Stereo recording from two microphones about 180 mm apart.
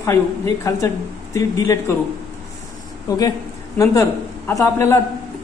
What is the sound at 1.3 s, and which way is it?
Speech, 15° left (ahead or behind).